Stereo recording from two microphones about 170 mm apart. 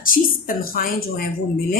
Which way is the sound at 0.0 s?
55° left (ahead or behind).